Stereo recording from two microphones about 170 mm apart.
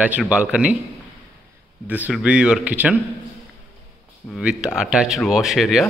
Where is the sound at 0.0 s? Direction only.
10° right (ahead or behind).